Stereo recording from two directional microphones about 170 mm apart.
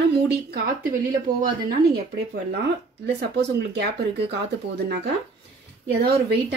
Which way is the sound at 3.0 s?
70° right (ahead or behind).